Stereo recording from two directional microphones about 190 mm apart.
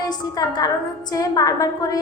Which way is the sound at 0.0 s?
20° left (ahead or behind).